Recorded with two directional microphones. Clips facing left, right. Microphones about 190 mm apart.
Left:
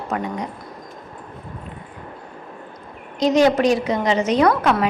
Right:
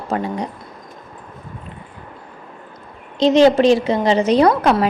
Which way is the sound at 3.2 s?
25° right (ahead or behind).